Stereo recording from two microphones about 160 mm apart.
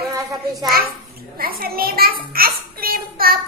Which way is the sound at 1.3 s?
65° right (ahead or behind).